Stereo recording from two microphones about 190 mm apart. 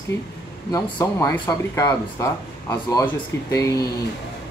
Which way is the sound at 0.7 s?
15° left (ahead or behind).